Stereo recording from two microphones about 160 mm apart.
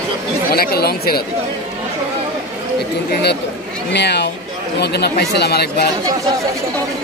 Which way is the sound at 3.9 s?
90° left.